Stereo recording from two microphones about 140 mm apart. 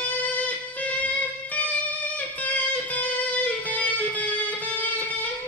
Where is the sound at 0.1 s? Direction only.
10° left (ahead or behind).